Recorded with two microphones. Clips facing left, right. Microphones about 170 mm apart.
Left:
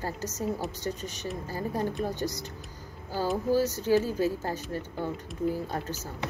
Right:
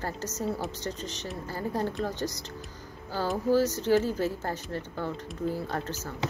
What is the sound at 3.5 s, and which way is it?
Speech, 15° left (ahead or behind).